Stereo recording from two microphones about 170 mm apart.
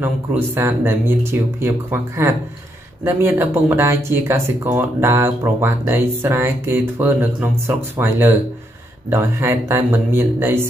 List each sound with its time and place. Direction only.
0.0 s speech: 15° right (ahead or behind)